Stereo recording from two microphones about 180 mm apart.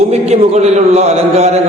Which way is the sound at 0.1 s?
35° right (ahead or behind).